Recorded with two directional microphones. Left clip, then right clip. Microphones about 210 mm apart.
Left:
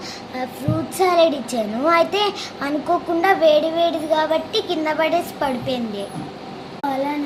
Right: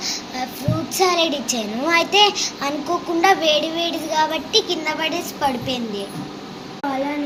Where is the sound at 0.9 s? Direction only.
20° left (ahead or behind).